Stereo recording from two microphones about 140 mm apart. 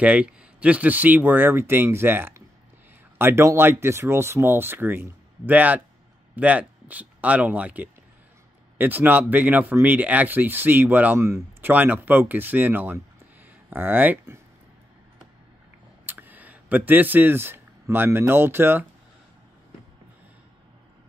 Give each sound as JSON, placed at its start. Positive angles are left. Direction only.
{"t": 0.0, "sound": "speech", "side_deg": -10}
{"t": 16.1, "sound": "speech", "side_deg": -15}